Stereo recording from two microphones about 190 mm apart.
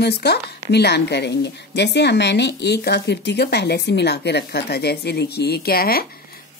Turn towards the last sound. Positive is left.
turn(degrees=50)  # may be behind; listen again after turning